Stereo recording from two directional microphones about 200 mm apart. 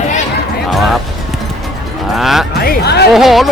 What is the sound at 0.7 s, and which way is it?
Speech, centre (ahead or behind).